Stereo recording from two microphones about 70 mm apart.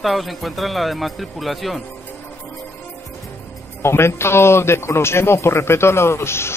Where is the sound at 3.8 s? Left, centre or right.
Left.